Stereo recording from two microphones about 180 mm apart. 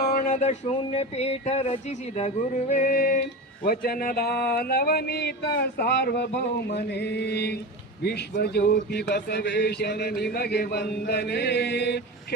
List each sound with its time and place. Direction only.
0.1 s a sound: 50° left (ahead or behind); by 6.2 s 70° left (ahead or behind)
6.7 s mantra: 70° left (ahead or behind)
8.0 s a man's voice: 65° left (ahead or behind)